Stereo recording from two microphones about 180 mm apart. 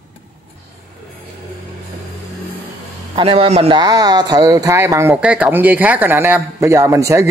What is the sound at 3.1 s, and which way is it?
Speech, 30° right (ahead or behind).